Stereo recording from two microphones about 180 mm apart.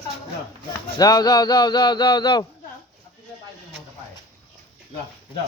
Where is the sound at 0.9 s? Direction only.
20° left (ahead or behind).